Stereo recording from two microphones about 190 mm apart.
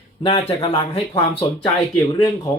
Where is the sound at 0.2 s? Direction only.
35° left (ahead or behind).